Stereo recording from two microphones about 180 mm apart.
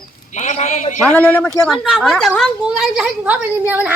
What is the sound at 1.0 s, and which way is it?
Speech, 5° left (ahead or behind).